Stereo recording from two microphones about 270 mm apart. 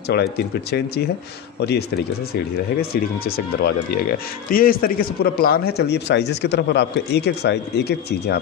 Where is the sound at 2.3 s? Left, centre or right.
Left.